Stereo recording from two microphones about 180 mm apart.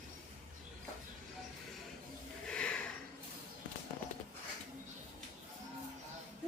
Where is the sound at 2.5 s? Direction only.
5° left (ahead or behind).